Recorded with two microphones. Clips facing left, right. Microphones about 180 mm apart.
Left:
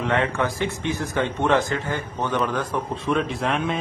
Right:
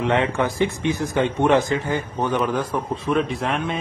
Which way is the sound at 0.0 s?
20° right (ahead or behind).